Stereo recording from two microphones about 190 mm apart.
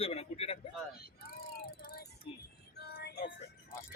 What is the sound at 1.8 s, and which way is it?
Music, 50° left (ahead or behind).